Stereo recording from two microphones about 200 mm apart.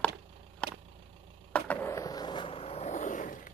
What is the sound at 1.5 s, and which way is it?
Skateboard, 5° left (ahead or behind).